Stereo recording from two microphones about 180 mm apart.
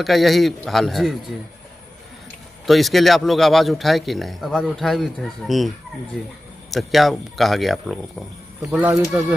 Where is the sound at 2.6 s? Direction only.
Centre (ahead or behind).